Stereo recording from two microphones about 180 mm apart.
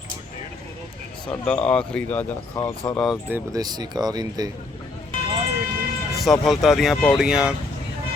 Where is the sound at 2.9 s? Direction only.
5° left (ahead or behind).